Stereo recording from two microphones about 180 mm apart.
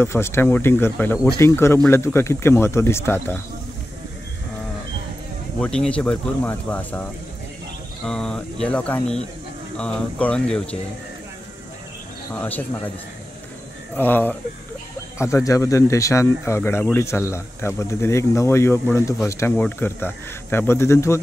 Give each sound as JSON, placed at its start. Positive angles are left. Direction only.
{"t": 0.0, "sound": "speech", "side_deg": 15}
{"t": 5.6, "sound": "speech", "side_deg": 5}
{"t": 8.1, "sound": "speech", "side_deg": 5}
{"t": 12.4, "sound": "speech", "side_deg": 10}
{"t": 13.9, "sound": "speech", "side_deg": 10}